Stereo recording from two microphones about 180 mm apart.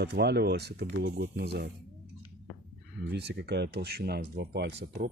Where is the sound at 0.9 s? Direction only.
80° right.